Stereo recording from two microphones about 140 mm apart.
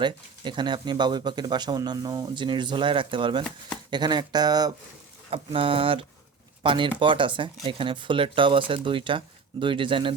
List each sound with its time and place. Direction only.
0.0 s speech: 35° right (ahead or behind)
5.3 s speech: 40° right (ahead or behind)